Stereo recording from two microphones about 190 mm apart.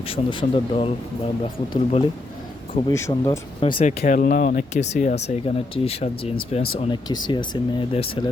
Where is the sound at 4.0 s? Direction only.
45° left (ahead or behind).